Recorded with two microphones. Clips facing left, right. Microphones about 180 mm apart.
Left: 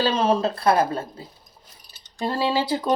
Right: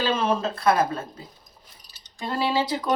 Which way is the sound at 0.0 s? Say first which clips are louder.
Left 3 dB; 35° left (ahead or behind).